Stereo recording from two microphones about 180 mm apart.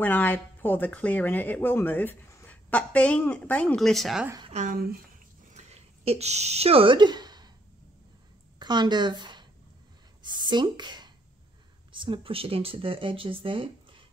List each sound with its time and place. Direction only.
0.0 s speech: 10° left (ahead or behind)
4.5 s speech: 40° right (ahead or behind)
5.5 s a sound: 35° right (ahead or behind)
8.5 s a woman's voice: 25° right (ahead or behind)